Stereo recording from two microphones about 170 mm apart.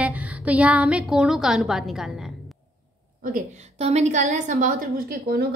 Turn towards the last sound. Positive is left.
turn(degrees=-60)  # may be behind; listen again after turning